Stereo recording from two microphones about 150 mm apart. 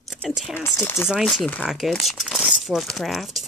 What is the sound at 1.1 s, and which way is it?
Speech, 5° right (ahead or behind).